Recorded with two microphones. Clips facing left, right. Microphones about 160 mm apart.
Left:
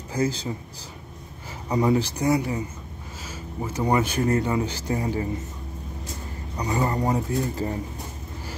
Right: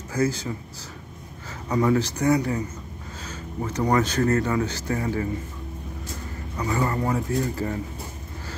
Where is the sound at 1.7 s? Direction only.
15° left (ahead or behind).